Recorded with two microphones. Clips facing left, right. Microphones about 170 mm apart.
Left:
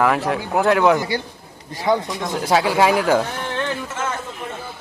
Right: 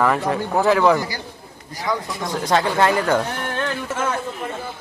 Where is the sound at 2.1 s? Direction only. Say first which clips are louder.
Left 1 dB; centre (ahead or behind).